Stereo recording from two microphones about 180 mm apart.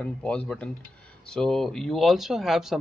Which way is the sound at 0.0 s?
5° left (ahead or behind).